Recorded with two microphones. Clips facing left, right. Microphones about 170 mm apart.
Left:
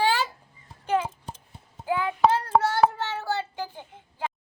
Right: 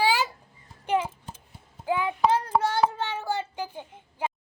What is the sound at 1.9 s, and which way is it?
Child singing, 15° right (ahead or behind).